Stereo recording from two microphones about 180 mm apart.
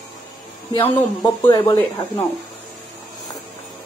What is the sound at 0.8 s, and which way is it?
Speech, 15° left (ahead or behind).